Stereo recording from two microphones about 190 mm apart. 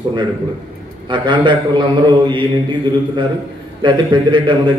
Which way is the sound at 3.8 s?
25° right (ahead or behind).